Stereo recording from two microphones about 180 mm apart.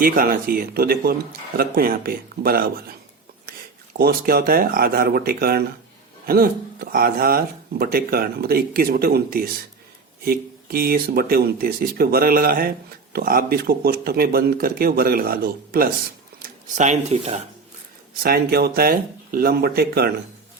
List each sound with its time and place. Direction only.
0.0 s speech: 50° right (ahead or behind)
3.9 s speech: 60° right (ahead or behind)
16.4 s speech: 40° right (ahead or behind)
18.2 s speech: 60° right (ahead or behind)